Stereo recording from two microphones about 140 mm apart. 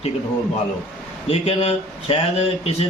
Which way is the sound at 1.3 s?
45° left (ahead or behind).